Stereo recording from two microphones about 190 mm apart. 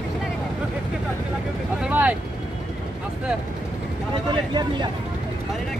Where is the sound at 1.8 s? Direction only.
5° right (ahead or behind).